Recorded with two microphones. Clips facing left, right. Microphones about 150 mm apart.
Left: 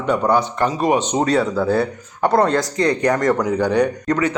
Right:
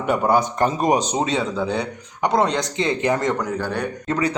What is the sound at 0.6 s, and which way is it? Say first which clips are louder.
Speech: left 1 dB; 45° right (ahead or behind).